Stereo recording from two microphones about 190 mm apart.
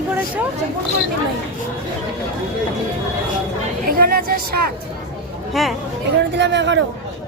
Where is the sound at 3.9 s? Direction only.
50° right (ahead or behind).